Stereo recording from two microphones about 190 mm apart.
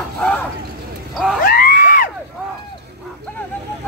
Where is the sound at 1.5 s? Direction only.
50° left (ahead or behind).